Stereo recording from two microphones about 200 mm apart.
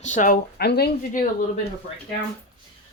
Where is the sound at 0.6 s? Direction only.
55° left (ahead or behind).